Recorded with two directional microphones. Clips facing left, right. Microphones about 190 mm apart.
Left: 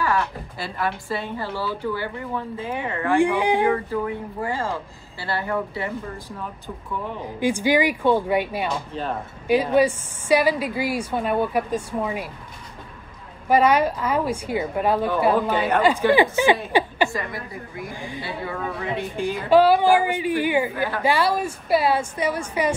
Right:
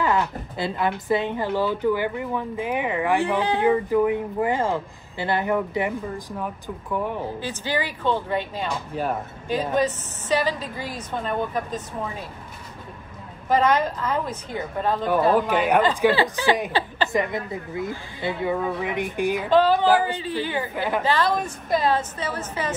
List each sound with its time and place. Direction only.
0.0 s speech: 20° right (ahead or behind)
3.2 s a woman's voice: 15° left (ahead or behind)
3.6 s speech: 15° right (ahead or behind)
7.3 s a woman's voice: 15° left (ahead or behind)
8.9 s speech: 10° right (ahead or behind)
9.5 s a woman's voice: 10° left (ahead or behind)
13.5 s a woman's voice: 10° left (ahead or behind)
15.3 s speech: 10° right (ahead or behind)
16.1 s a woman's voice: 15° left (ahead or behind)
17.1 s a woman's voice: 20° right (ahead or behind)
19.5 s a woman's voice: 10° left (ahead or behind)